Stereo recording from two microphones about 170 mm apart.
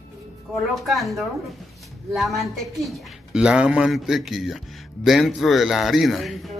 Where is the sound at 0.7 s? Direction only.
Centre (ahead or behind).